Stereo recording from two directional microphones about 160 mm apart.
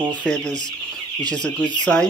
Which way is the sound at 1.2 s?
5° left (ahead or behind).